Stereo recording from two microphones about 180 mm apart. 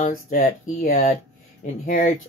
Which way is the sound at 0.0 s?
50° left (ahead or behind).